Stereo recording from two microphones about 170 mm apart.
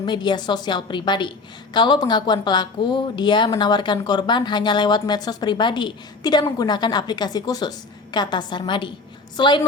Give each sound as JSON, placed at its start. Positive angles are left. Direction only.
{"t": 0.0, "sound": "speech", "side_deg": 25}